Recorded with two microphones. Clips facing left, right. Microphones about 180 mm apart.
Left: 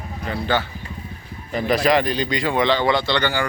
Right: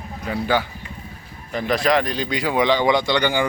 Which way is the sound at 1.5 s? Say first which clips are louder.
Left 1 dB; 5° left (ahead or behind).